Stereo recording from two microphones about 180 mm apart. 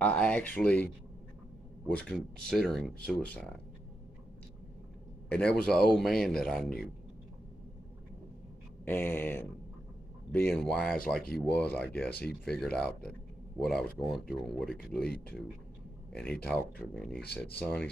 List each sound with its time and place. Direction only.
0.0 s speech: 5° left (ahead or behind)
2.0 s speech: 5° left (ahead or behind)
5.3 s speech: 5° left (ahead or behind)
8.8 s speech: 10° left (ahead or behind)
11.2 s speech: 55° left (ahead or behind)
11.5 s speech: 5° left (ahead or behind)
16.1 s speech: 5° left (ahead or behind)